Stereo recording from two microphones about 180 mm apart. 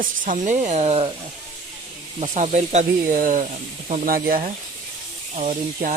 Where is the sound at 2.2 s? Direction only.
40° right (ahead or behind).